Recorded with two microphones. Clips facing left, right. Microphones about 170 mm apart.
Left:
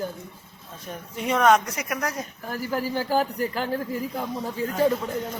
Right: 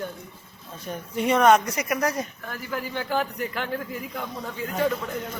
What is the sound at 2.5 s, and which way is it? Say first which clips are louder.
A man's voice: left 9 dB; 40° left (ahead or behind).